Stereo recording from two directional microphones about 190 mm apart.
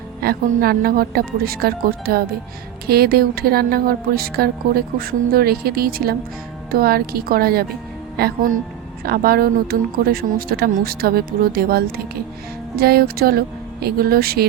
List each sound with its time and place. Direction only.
0.2 s speech: 55° right (ahead or behind)